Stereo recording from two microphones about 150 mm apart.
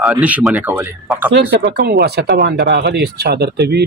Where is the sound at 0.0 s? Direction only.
10° right (ahead or behind).